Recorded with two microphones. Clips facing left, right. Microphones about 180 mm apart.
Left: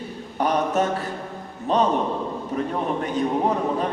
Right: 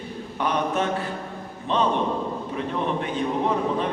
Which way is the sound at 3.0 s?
40° left (ahead or behind).